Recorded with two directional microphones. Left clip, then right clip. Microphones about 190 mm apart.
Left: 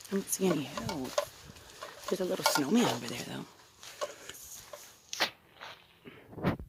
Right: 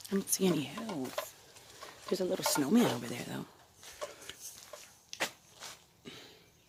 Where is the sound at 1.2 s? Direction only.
60° left (ahead or behind).